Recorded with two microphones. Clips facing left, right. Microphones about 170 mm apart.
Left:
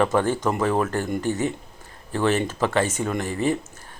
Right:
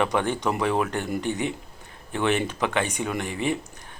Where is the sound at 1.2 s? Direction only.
40° left (ahead or behind).